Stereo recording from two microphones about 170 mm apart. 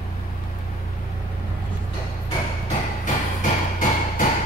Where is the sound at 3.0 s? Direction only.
50° left (ahead or behind).